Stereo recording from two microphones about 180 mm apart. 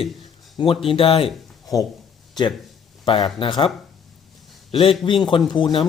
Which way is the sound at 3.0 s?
30° left (ahead or behind).